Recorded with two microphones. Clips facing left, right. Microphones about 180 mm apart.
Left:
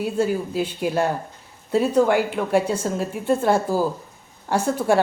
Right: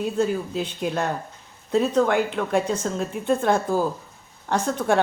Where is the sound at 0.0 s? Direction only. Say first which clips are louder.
Left 1 dB; 5° left (ahead or behind).